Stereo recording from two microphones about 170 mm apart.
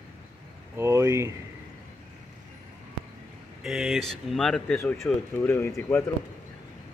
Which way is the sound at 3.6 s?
Centre (ahead or behind).